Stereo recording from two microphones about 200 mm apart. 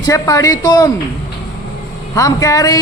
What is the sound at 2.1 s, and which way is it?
Speech, 15° left (ahead or behind).